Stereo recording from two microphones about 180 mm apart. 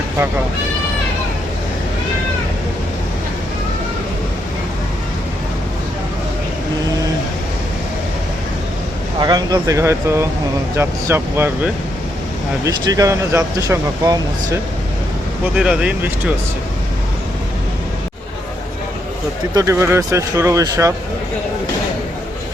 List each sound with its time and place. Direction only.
9.2 s speech: 20° right (ahead or behind)
15.5 s speech: 5° right (ahead or behind)
19.5 s speech: 15° right (ahead or behind)